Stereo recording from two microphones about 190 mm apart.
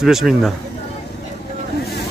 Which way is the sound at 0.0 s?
Centre (ahead or behind).